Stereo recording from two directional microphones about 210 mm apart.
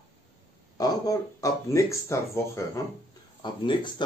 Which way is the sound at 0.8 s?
15° left (ahead or behind).